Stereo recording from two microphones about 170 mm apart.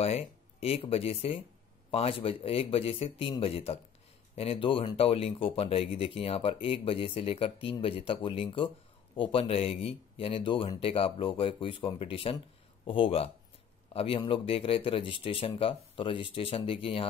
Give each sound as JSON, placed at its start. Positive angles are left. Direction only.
{"t": 0.0, "sound": "speech", "side_deg": 35}